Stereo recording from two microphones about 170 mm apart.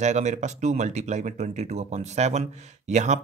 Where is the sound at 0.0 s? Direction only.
45° right (ahead or behind).